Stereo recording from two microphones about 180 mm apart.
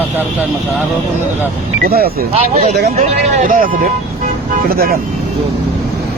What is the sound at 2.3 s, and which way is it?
Speech, 35° right (ahead or behind).